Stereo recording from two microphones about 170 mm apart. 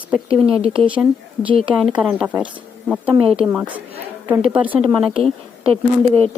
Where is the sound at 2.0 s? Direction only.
5° right (ahead or behind).